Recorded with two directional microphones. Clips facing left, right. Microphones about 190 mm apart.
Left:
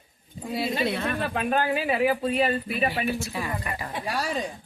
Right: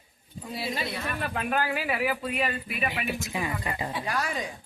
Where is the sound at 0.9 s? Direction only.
60° left (ahead or behind).